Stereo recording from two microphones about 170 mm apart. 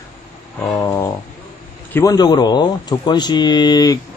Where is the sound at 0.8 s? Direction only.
15° left (ahead or behind).